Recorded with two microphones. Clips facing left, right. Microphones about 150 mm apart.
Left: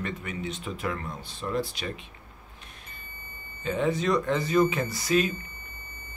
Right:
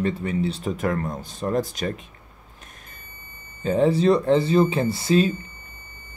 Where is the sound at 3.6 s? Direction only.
35° right (ahead or behind).